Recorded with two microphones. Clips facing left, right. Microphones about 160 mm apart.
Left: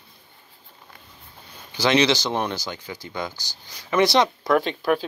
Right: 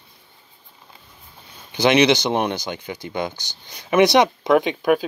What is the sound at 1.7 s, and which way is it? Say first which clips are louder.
Speech: right 4 dB; 20° right (ahead or behind).